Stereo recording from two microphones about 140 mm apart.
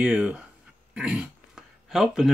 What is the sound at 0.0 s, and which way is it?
Speech, 5° right (ahead or behind).